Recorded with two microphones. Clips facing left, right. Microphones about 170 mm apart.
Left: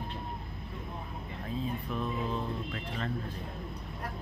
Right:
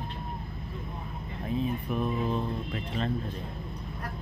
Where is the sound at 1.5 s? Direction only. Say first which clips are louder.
Right 5 dB; 15° right (ahead or behind).